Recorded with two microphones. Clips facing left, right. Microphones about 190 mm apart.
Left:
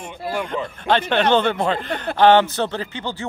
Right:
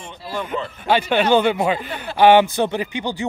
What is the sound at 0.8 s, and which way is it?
Speech, 10° right (ahead or behind).